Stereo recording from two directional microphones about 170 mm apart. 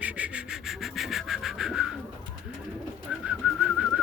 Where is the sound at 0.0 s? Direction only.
5° right (ahead or behind).